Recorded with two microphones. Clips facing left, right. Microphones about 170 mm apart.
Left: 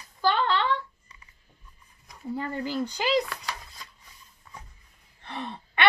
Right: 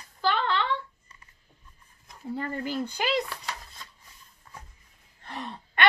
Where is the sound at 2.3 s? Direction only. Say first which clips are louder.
Left 1 dB; 50° right (ahead or behind).